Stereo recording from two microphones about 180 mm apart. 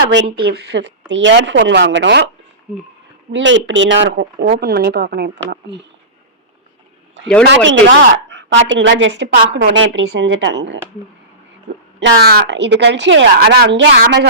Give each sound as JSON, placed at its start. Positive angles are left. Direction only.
{"t": 0.1, "sound": "speech", "side_deg": -80}
{"t": 0.4, "sound": "speech", "side_deg": -65}
{"t": 3.3, "sound": "speech", "side_deg": -90}
{"t": 7.4, "sound": "a woman's voice", "side_deg": -85}
{"t": 11.9, "sound": "speech", "side_deg": -70}